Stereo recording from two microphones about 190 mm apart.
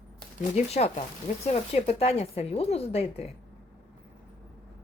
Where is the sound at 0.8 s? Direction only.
35° left (ahead or behind).